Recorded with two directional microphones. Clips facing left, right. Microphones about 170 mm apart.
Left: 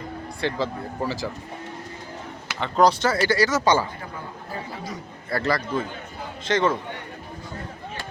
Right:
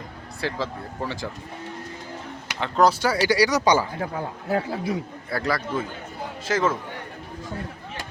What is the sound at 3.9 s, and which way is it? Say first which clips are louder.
Speech: right 7 dB; 85° right.